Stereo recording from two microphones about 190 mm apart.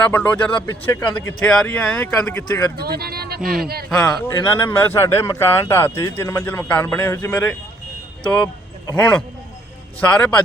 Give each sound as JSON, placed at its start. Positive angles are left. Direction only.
{"t": 0.0, "sound": "speech", "side_deg": 10}
{"t": 2.8, "sound": "speech", "side_deg": -55}
{"t": 3.4, "sound": "speech", "side_deg": 0}
{"t": 9.0, "sound": "speech", "side_deg": 5}